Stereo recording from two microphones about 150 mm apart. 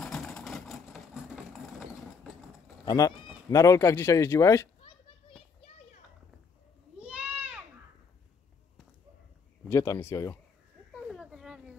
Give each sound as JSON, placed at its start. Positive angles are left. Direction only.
{"t": 0.0, "sound": "engine", "side_deg": 5}
{"t": 2.8, "sound": "speech", "side_deg": 25}
{"t": 7.0, "sound": "goat", "side_deg": -10}
{"t": 9.7, "sound": "speech", "side_deg": 20}
{"t": 10.9, "sound": "a sound", "side_deg": -5}